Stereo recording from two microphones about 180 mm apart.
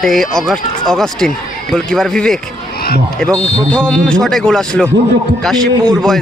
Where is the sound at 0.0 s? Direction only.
Centre (ahead or behind).